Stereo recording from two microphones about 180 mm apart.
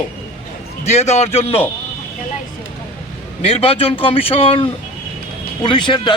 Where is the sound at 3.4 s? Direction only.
30° left (ahead or behind).